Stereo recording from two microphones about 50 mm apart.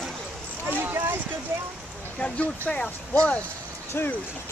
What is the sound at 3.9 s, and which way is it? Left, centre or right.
Speech, left.